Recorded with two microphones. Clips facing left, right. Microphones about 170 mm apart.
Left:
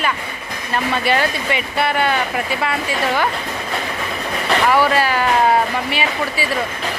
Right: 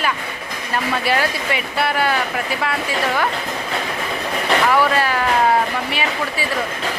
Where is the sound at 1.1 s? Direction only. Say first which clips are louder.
Left 2 dB; centre (ahead or behind).